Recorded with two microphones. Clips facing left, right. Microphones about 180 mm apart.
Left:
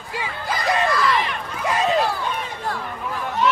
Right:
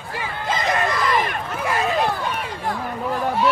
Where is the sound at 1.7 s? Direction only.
20° left (ahead or behind).